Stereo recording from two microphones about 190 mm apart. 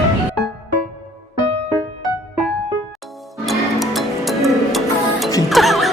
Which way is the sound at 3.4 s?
Centre (ahead or behind).